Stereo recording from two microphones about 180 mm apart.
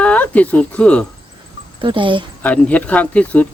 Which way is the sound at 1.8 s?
25° right (ahead or behind).